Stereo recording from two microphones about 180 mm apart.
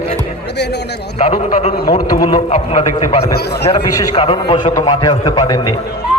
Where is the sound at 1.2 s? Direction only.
40° left (ahead or behind).